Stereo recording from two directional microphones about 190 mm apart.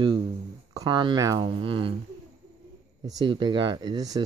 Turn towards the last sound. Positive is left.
turn(degrees=-20)  # may be behind; listen again after turning